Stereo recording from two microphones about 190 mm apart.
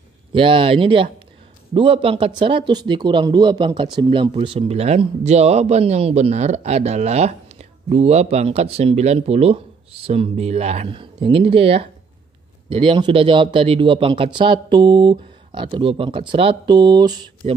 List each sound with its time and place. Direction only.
0.3 s speech: 25° right (ahead or behind)